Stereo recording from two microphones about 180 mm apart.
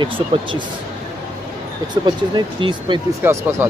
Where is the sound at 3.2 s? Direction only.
10° right (ahead or behind).